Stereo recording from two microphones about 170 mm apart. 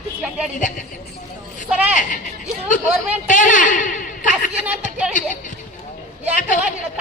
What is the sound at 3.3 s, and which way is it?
A woman's voice, 50° left (ahead or behind).